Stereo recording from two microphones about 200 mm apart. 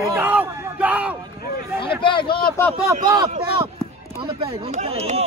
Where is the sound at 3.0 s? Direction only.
20° right (ahead or behind).